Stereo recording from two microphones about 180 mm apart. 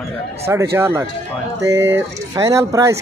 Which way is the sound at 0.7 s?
15° right (ahead or behind).